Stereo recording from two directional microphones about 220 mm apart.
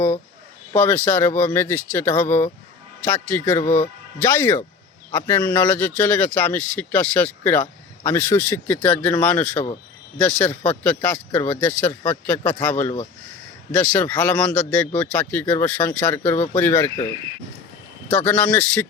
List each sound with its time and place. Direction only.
0.7 s a man's voice: 10° left (ahead or behind)
18.1 s a man's voice: 5° left (ahead or behind)